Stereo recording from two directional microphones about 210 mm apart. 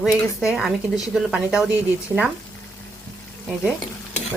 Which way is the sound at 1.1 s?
5° right (ahead or behind).